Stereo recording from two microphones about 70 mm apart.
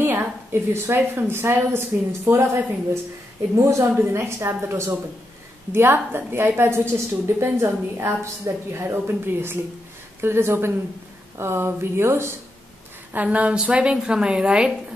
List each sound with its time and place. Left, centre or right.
0.0 s a woman's voice: right
3.5 s a woman's voice: right
13.1 s a woman's voice: centre